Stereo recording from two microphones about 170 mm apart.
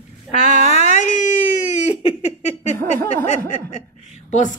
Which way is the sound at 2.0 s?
40° left (ahead or behind).